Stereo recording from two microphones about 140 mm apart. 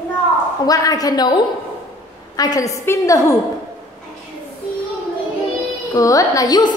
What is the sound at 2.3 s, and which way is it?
A woman's voice, 25° left (ahead or behind).